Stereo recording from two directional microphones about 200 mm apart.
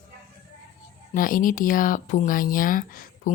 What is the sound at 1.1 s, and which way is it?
Speech, 45° left (ahead or behind).